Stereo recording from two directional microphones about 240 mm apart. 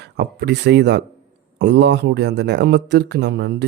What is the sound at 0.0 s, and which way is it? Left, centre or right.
Speech, right.